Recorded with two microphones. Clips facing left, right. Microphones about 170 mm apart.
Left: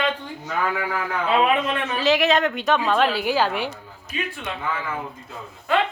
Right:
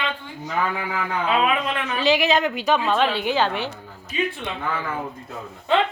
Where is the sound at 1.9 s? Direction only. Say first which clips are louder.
Even; centre (ahead or behind).